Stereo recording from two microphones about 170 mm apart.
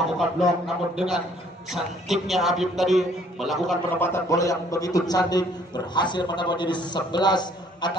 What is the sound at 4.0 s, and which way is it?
A man's voice, 15° left (ahead or behind).